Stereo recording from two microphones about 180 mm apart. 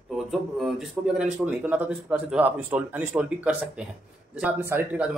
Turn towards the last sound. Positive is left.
turn(degrees=-10)  # may be behind; listen again after turning